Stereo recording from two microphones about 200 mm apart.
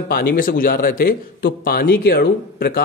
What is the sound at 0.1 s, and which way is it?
A man's voice, 45° left (ahead or behind).